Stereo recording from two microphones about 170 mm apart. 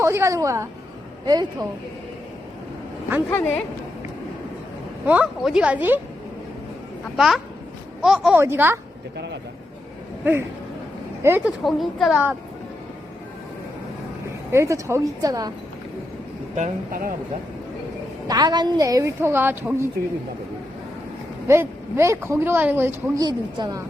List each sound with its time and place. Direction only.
0.0 s a woman's voice: 15° right (ahead or behind)
3.2 s speech: 10° left (ahead or behind)
5.0 s speech: 5° right (ahead or behind)
7.2 s speech: centre (ahead or behind)
8.4 s speech: 15° right (ahead or behind)
10.3 s speech: 10° right (ahead or behind)
11.4 s speech: centre (ahead or behind)
14.5 s a woman's voice: 15° right (ahead or behind)
16.6 s speech: 50° right (ahead or behind)
18.3 s a woman's voice: 25° right (ahead or behind)
21.4 s speech: 15° right (ahead or behind)
23.2 s a woman's voice: 25° right (ahead or behind)